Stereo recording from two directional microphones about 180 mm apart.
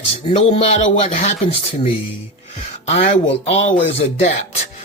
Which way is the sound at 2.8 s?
35° left (ahead or behind).